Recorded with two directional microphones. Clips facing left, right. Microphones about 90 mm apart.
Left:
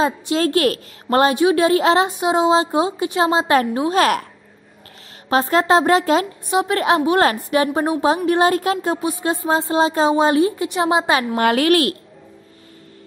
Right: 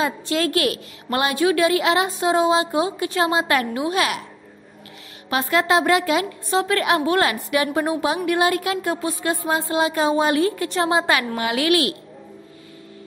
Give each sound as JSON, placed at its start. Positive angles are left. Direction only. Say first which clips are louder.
{"t": 0.0, "sound": "a woman's voice", "louder": "left 4 dB", "side_deg": 25}
{"t": 1.3, "sound": "speech", "louder": "left 3 dB", "side_deg": 25}
{"t": 2.0, "sound": "speech", "louder": "left 2 dB", "side_deg": 20}
{"t": 5.3, "sound": "a woman's voice", "louder": "left 4 dB", "side_deg": 35}
{"t": 6.5, "sound": "speech", "louder": "left 3 dB", "side_deg": 20}
{"t": 11.3, "sound": "a woman's voice", "louder": "left 5 dB", "side_deg": 45}